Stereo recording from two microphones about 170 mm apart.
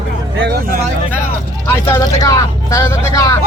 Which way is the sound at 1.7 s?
15° left (ahead or behind).